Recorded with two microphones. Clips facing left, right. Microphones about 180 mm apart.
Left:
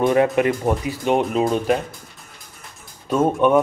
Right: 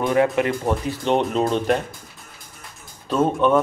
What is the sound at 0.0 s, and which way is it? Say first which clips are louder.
Speech: left 2 dB; 20° left (ahead or behind).